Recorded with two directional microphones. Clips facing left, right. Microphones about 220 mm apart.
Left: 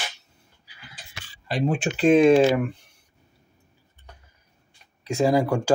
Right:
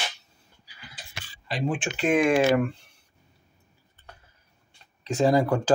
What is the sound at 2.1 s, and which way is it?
Speech, 25° left (ahead or behind).